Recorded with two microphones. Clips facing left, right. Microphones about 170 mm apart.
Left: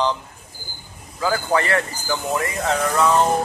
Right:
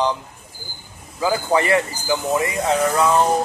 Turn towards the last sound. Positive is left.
turn(degrees=0)  # may be behind; listen again after turning